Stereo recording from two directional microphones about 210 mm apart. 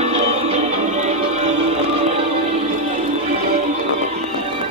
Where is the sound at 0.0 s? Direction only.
30° right (ahead or behind).